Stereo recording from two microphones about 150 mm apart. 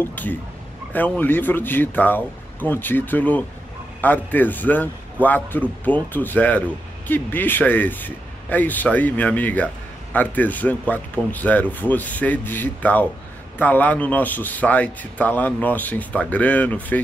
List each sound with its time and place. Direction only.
0.0 s speech: 15° left (ahead or behind)